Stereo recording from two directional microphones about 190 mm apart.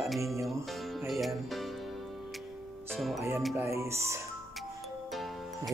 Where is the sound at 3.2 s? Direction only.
15° right (ahead or behind).